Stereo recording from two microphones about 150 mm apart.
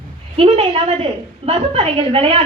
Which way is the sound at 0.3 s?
40° right (ahead or behind).